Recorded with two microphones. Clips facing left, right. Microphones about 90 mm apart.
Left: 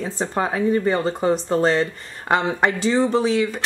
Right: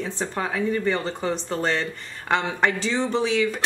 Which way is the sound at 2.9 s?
35° left (ahead or behind).